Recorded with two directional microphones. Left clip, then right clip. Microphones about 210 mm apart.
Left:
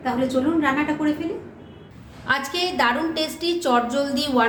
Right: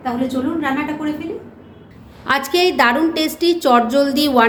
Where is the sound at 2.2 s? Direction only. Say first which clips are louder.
Right 7 dB; 40° right (ahead or behind).